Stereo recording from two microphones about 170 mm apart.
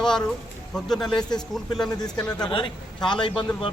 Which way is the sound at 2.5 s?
30° left (ahead or behind).